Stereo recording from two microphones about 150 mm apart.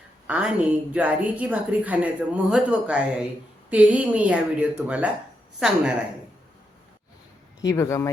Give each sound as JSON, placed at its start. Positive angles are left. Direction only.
{"t": 0.3, "sound": "a woman's voice", "side_deg": -10}
{"t": 7.6, "sound": "speech", "side_deg": 25}